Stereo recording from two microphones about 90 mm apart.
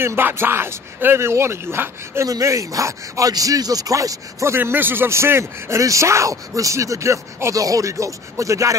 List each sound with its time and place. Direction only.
0.0 s speech: 25° right (ahead or behind)
2.2 s speech: 40° right (ahead or behind)